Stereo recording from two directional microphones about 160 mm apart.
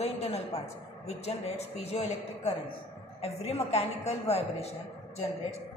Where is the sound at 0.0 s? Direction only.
40° left (ahead or behind).